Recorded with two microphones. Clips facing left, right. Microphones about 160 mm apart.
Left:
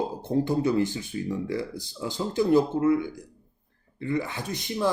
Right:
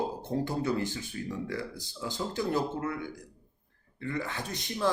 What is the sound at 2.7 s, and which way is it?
Speech, 20° left (ahead or behind).